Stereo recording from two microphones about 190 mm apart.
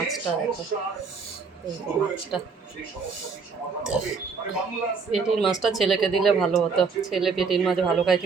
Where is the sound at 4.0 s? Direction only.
5° right (ahead or behind).